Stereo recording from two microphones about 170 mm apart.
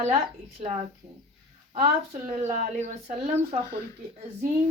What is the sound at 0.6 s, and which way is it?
Speech, 35° right (ahead or behind).